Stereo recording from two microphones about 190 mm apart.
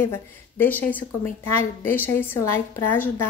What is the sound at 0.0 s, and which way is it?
A woman's voice, 10° left (ahead or behind).